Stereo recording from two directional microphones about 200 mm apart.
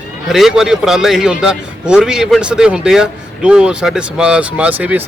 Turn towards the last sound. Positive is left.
turn(degrees=-10)  # may be behind; listen again after turning